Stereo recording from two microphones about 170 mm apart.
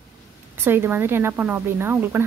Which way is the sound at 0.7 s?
15° right (ahead or behind).